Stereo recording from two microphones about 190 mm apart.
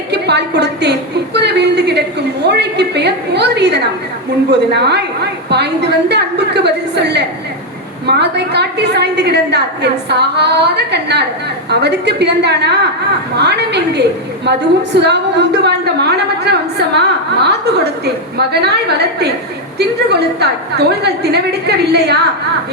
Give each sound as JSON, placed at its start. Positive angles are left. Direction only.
{"t": 0.1, "sound": "a woman's voice", "side_deg": -60}